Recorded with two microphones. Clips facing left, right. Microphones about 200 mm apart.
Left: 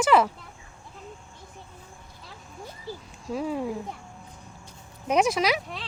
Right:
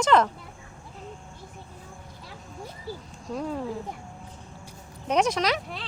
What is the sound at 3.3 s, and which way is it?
Speech, 5° left (ahead or behind).